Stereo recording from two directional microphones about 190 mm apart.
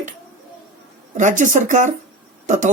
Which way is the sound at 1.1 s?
40° right (ahead or behind).